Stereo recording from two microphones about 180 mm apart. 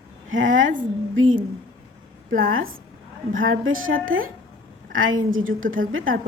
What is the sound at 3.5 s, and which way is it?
A woman's voice, 90° right.